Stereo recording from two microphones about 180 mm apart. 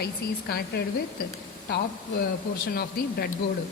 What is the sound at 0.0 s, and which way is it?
Speech, 60° left (ahead or behind).